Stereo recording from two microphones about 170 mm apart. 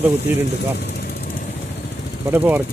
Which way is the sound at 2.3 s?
10° right (ahead or behind).